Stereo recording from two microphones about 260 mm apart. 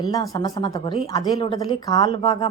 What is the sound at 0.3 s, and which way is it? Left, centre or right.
A woman's voice, centre.